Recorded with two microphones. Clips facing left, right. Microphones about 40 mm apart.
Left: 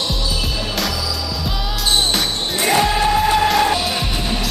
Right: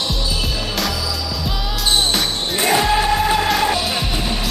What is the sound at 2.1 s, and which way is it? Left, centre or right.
Music, centre.